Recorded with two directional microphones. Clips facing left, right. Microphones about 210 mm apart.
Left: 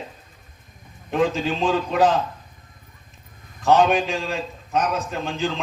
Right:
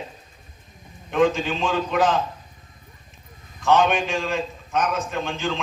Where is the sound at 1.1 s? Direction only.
35° left (ahead or behind).